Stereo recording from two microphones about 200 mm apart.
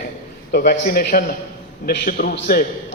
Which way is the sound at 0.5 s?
45° left (ahead or behind).